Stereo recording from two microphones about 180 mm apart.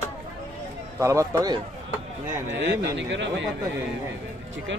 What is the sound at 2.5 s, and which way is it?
Speech, 80° right.